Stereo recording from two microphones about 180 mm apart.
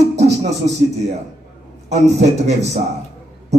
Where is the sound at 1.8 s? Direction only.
40° right (ahead or behind).